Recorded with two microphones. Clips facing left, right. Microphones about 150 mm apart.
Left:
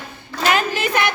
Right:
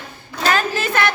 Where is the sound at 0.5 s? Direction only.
15° left (ahead or behind).